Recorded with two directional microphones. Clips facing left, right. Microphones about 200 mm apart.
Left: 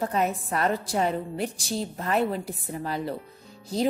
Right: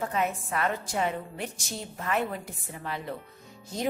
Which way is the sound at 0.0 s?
35° left (ahead or behind).